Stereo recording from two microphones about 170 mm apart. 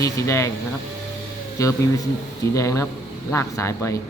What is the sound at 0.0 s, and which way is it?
Speech, 15° left (ahead or behind).